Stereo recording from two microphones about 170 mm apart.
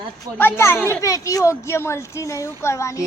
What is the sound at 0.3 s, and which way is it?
A child's voice, 15° left (ahead or behind).